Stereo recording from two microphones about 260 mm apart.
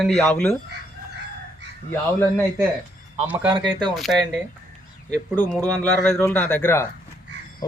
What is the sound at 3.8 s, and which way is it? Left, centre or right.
Speech, centre.